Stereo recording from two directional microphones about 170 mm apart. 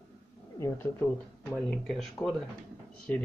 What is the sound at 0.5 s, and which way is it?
Speech, 15° left (ahead or behind).